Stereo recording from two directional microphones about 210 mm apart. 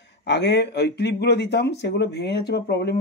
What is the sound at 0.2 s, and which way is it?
Speech, 55° left (ahead or behind).